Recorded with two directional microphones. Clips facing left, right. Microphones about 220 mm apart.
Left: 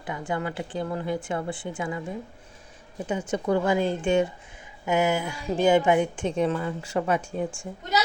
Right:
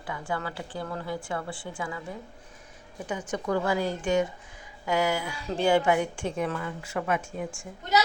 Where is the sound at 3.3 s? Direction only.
25° left (ahead or behind).